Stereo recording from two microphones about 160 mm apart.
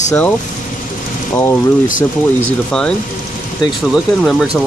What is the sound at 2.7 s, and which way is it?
Speech, 5° left (ahead or behind).